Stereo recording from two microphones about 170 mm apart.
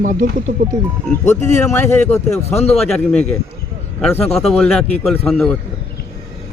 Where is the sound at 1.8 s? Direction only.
15° left (ahead or behind).